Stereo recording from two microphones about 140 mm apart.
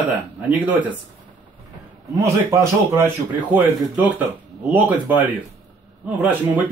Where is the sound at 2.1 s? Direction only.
20° right (ahead or behind).